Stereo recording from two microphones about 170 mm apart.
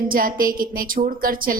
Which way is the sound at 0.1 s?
55° right (ahead or behind).